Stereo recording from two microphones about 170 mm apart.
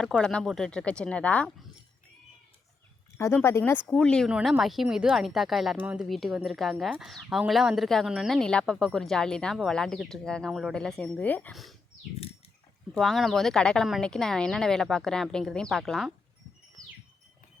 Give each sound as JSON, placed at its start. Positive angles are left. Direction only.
{"t": 0.0, "sound": "a woman's voice", "side_deg": 5}
{"t": 3.2, "sound": "a woman's voice", "side_deg": 15}
{"t": 12.9, "sound": "a woman's voice", "side_deg": 0}